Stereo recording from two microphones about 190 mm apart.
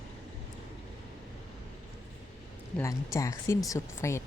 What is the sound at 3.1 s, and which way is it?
Speech, 15° left (ahead or behind).